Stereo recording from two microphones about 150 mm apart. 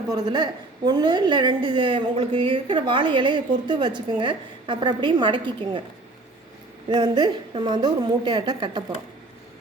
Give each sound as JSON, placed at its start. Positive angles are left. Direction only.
{"t": 0.1, "sound": "a woman's voice", "side_deg": -25}
{"t": 6.9, "sound": "a woman's voice", "side_deg": -30}